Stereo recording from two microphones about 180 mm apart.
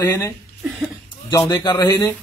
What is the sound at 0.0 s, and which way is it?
Speech, 15° left (ahead or behind).